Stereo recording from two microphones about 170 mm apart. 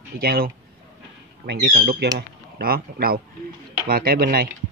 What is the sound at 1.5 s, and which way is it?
Speech, 70° right (ahead or behind).